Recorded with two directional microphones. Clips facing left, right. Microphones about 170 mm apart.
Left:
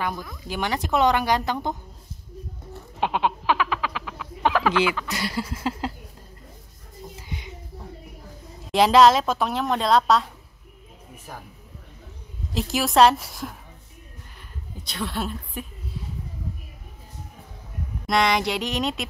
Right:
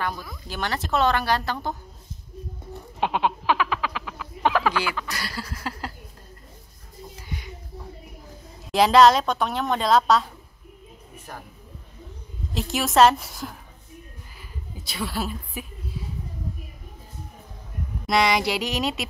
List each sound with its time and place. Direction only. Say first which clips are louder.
0.5 s speech: left 2 dB; 15° left (ahead or behind)
3.0 s frog: even; centre (ahead or behind)
5.1 s a sound: left 5 dB; 20° left (ahead or behind)
7.2 s a sound: right 3 dB; 20° left (ahead or behind)
8.7 s a woman's voice: even; centre (ahead or behind)
12.5 s a woman's voice: even; centre (ahead or behind)
14.8 s a woman's voice: even; 5° right (ahead or behind)
18.0 s a woman's voice: even; centre (ahead or behind)